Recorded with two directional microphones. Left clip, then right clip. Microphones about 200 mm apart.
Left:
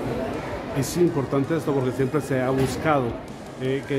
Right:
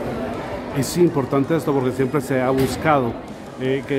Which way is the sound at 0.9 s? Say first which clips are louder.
Right 4 dB; 20° right (ahead or behind).